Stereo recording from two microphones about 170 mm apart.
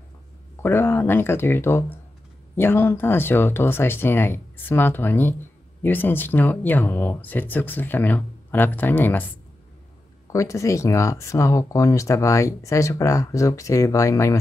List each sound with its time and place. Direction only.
0.6 s speech: 15° left (ahead or behind)
10.3 s speech: 20° left (ahead or behind)